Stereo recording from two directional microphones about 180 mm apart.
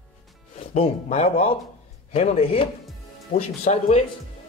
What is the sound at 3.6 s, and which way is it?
Speech, 35° left (ahead or behind).